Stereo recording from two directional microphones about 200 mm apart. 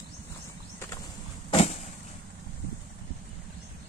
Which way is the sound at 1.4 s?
30° left (ahead or behind).